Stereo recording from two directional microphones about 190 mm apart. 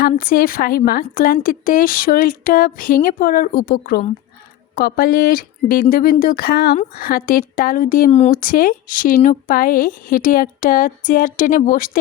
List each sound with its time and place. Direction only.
0.0 s speech: 50° left (ahead or behind)